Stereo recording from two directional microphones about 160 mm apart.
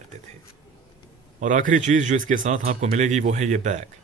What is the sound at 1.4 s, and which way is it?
Speech, 55° right (ahead or behind).